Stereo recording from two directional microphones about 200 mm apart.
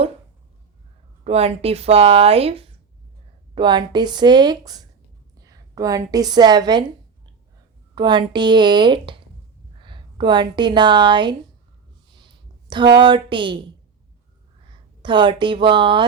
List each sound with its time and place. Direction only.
1.2 s a woman's voice: 30° right (ahead or behind)
7.9 s speech: 20° right (ahead or behind)
12.1 s a sound: 25° right (ahead or behind)
13.0 s speech: 25° right (ahead or behind)
15.0 s speech: 25° right (ahead or behind)